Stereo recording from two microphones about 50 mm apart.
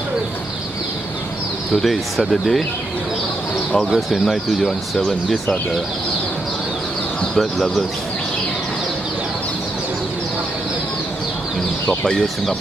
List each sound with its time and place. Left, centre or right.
1.8 s speech: centre
3.9 s speech: centre
7.3 s speech: centre
11.9 s speech: centre